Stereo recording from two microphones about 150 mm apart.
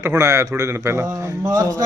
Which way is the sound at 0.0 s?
20° right (ahead or behind).